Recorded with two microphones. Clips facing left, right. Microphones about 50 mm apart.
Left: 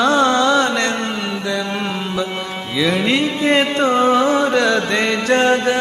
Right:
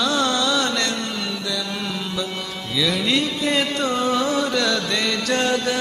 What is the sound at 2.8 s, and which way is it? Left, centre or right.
Music, left.